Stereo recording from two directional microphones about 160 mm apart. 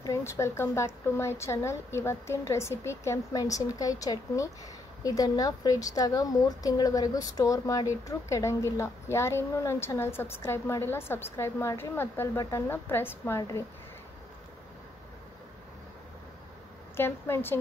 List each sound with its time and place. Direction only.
0.0 s a woman's voice: 20° left (ahead or behind)
16.9 s a woman's voice: 15° left (ahead or behind)